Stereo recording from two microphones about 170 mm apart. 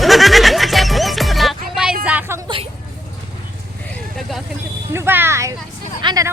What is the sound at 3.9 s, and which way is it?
Vehicle, centre (ahead or behind).